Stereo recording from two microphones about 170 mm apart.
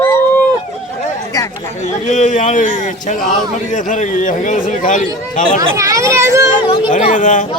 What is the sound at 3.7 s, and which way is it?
Speech, 45° left (ahead or behind).